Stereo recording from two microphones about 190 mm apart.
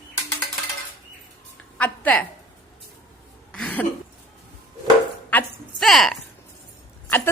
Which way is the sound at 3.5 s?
5° left (ahead or behind).